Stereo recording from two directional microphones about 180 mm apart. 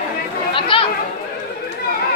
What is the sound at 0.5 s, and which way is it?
Chatter, 30° left (ahead or behind).